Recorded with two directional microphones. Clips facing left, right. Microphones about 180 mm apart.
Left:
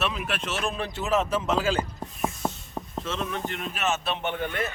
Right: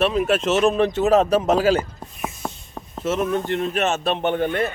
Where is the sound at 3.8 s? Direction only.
45° right (ahead or behind).